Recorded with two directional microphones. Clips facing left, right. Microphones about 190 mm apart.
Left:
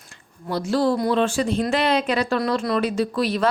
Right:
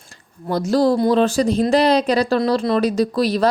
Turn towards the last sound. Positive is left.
turn(degrees=-35)  # may be behind; listen again after turning